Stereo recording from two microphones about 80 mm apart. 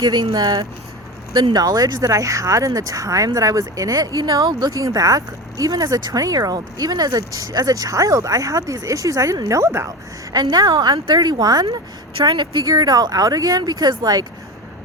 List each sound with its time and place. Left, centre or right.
0.0 s speech: right
0.3 s speech: right
1.3 s speech: right
1.5 s speech: right
10.3 s speech: right